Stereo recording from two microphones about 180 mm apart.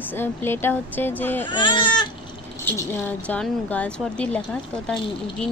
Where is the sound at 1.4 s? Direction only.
25° left (ahead or behind).